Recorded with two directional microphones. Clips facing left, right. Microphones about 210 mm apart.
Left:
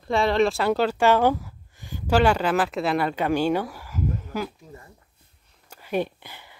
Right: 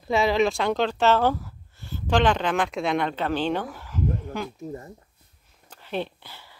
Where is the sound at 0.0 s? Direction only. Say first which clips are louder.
Left 1 dB; centre (ahead or behind).